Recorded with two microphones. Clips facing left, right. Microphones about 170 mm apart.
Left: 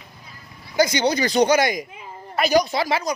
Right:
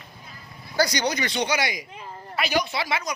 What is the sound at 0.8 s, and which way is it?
Speech, 25° left (ahead or behind).